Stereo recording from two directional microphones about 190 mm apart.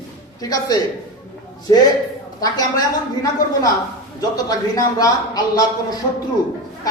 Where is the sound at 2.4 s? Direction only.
20° left (ahead or behind).